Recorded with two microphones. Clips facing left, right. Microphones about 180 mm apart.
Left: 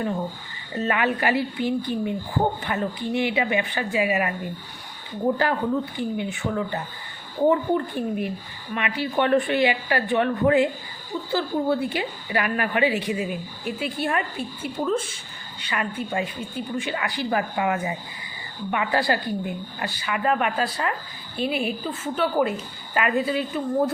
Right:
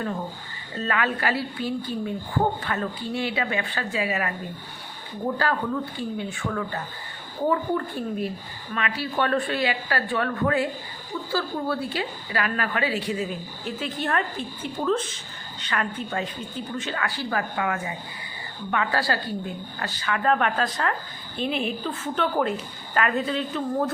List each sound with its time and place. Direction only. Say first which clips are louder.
0.7 s speech: left 3 dB; 20° left (ahead or behind)
5.4 s speech: left 3 dB; 15° left (ahead or behind)